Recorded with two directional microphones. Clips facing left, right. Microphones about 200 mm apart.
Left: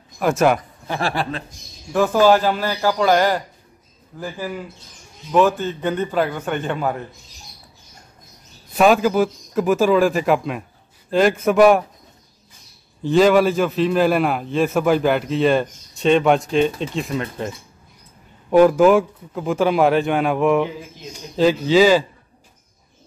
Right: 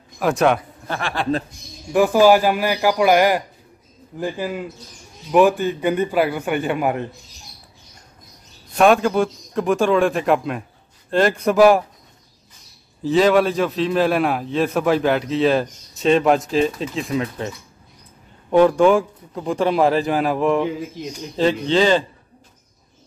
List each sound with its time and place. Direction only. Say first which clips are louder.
0.2 s a man's voice: even; centre (ahead or behind)
1.9 s a man's voice: right 1 dB; 10° right (ahead or behind)
8.7 s a man's voice: even; centre (ahead or behind)
13.0 s a man's voice: left 1 dB; centre (ahead or behind)
21.6 s a man's voice: left 4 dB; 5° left (ahead or behind)